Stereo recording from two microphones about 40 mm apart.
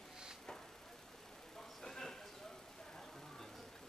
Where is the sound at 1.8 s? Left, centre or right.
Centre.